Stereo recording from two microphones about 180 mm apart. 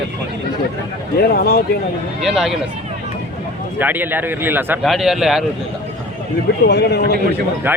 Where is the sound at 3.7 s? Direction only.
10° right (ahead or behind).